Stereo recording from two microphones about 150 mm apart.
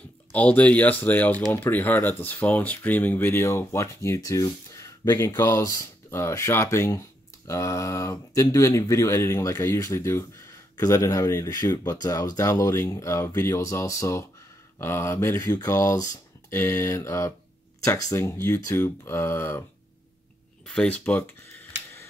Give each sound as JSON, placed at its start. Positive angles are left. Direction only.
{"t": 0.3, "sound": "speech", "side_deg": 10}
{"t": 20.6, "sound": "camera", "side_deg": 5}